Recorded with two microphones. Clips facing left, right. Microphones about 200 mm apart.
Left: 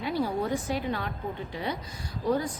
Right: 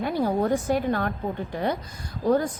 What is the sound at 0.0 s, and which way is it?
A woman's voice, 50° right (ahead or behind).